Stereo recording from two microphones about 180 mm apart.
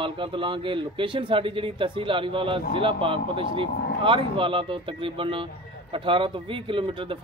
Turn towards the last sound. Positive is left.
turn(degrees=-30)  # may be behind; listen again after turning